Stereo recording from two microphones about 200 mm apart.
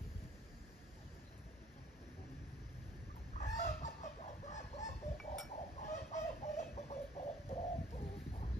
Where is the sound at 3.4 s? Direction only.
35° left (ahead or behind).